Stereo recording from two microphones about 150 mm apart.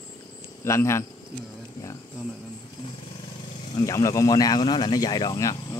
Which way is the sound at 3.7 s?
20° left (ahead or behind).